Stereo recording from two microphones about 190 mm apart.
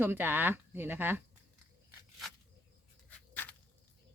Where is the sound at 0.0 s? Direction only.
10° right (ahead or behind).